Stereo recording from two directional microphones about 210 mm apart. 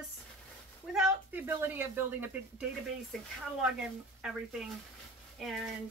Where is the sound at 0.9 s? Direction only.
5° right (ahead or behind).